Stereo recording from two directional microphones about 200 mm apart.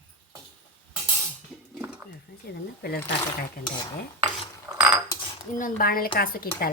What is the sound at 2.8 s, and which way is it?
Speech, 50° left (ahead or behind).